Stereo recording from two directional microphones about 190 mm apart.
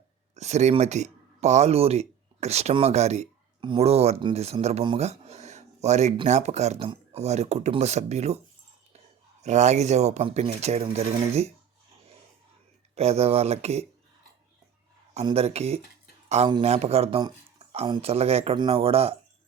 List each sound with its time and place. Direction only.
0.3 s speech: 35° right (ahead or behind)
9.4 s speech: 35° right (ahead or behind)
13.0 s speech: 35° right (ahead or behind)
15.1 s speech: 30° right (ahead or behind)